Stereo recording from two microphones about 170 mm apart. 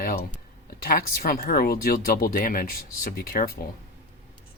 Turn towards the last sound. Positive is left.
turn(degrees=60)  # may be behind; listen again after turning